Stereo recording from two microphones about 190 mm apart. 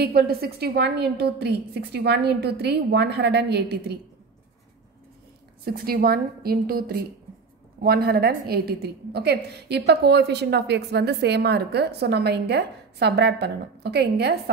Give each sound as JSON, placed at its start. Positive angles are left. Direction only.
{"t": 0.0, "sound": "a woman's voice", "side_deg": -55}
{"t": 5.7, "sound": "a woman's voice", "side_deg": -55}